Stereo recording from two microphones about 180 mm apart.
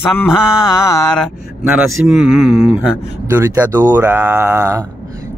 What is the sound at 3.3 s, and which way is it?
Speech, 15° right (ahead or behind).